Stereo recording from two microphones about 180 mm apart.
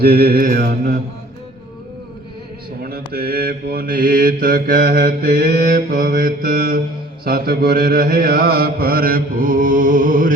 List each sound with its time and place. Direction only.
0.0 s mantra: 60° right (ahead or behind)
3.1 s mantra: 60° right (ahead or behind)
5.9 s mantra: 55° right (ahead or behind)